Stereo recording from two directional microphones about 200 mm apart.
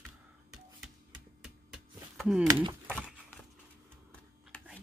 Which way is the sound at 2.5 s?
20° right (ahead or behind).